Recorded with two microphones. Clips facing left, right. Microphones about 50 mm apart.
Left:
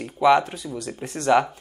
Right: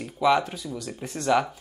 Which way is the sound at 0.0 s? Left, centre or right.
Centre.